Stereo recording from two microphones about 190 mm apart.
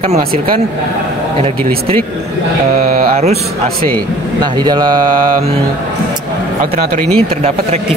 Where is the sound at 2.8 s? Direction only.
50° right (ahead or behind).